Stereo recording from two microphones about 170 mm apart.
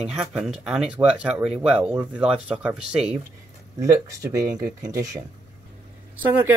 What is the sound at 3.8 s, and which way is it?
Speech, 20° right (ahead or behind).